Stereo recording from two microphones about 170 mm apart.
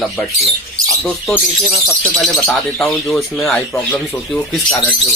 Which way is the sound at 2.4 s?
Centre (ahead or behind).